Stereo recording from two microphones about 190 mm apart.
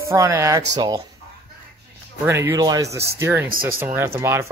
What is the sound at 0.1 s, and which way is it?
Speech, 15° right (ahead or behind).